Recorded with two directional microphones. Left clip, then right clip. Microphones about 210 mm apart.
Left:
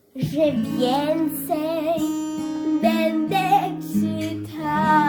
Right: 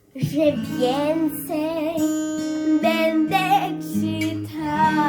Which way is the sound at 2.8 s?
Centre (ahead or behind).